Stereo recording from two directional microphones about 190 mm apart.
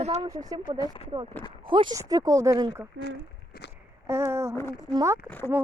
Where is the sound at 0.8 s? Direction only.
30° left (ahead or behind).